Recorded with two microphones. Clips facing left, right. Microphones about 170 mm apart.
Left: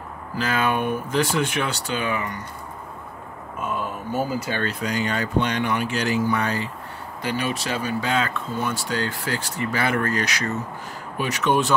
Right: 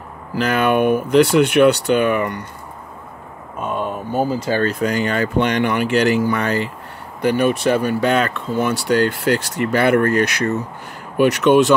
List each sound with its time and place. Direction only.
0.4 s speech: 65° right (ahead or behind)
3.6 s a sound: 30° right (ahead or behind)
4.5 s speech: 40° right (ahead or behind)
4.8 s speech: 60° right (ahead or behind)
7.2 s speech: 55° right (ahead or behind)
11.1 s speech: 70° right (ahead or behind)